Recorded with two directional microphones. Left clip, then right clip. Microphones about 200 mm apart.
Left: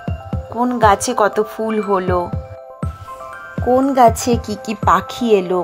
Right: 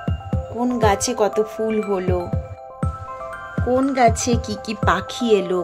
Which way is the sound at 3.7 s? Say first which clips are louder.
Left 5 dB; centre (ahead or behind).